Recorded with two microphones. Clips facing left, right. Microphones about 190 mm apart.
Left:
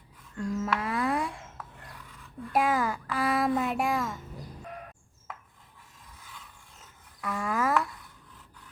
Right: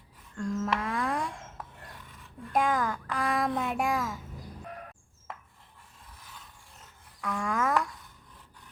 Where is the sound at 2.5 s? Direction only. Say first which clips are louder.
Left 1 dB; 5° left (ahead or behind).